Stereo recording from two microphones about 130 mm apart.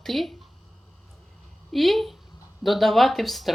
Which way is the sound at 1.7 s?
Centre (ahead or behind).